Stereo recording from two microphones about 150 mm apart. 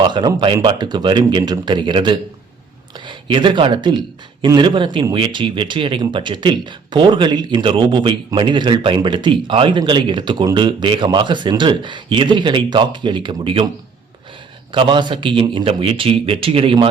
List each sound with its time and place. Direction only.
0.0 s speech: 30° right (ahead or behind)
14.7 s speech: 30° right (ahead or behind)